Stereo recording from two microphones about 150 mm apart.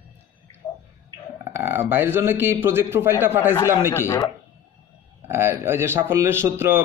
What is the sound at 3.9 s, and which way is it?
Speech, 15° left (ahead or behind).